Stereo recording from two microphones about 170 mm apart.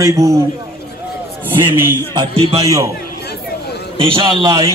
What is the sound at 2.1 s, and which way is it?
Speech, 35° right (ahead or behind).